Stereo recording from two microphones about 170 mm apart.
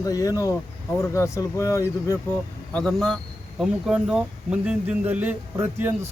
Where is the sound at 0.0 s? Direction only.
20° left (ahead or behind).